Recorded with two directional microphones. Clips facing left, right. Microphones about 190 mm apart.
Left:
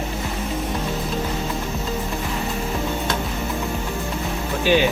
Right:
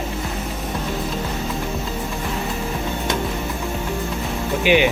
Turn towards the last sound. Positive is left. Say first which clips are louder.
# right 1 dB
turn(degrees=-15)  # may be behind; listen again after turning